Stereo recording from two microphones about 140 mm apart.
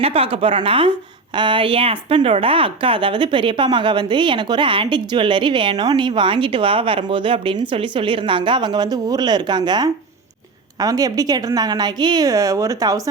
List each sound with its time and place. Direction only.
0.0 s a woman's voice: 45° right (ahead or behind); by 13.0 s 25° right (ahead or behind)